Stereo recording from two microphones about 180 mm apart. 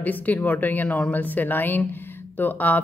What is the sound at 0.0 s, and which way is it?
Speech, 10° left (ahead or behind).